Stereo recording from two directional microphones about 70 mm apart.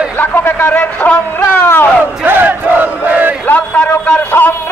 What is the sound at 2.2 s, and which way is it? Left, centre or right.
Battle cry, right.